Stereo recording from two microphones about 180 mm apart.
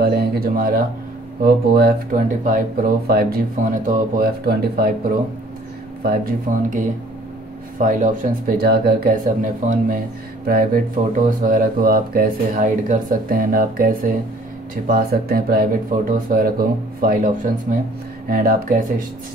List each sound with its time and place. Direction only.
0.0 s speech: 60° right (ahead or behind)
6.0 s speech: 50° right (ahead or behind)
7.8 s speech: 45° right (ahead or behind)